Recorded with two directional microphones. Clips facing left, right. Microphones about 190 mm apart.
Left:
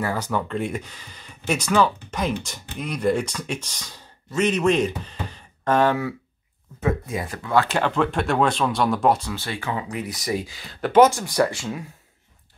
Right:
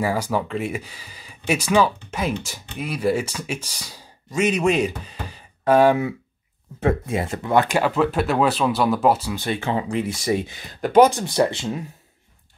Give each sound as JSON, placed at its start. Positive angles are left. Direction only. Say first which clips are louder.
{"t": 0.0, "sound": "speech", "louder": "right 3 dB", "side_deg": -10}
{"t": 6.9, "sound": "speech", "louder": "right 3 dB", "side_deg": -25}
{"t": 9.3, "sound": "speech", "louder": "right 5 dB", "side_deg": -20}